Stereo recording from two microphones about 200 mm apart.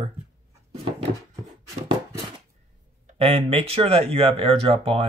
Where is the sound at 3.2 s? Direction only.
30° right (ahead or behind).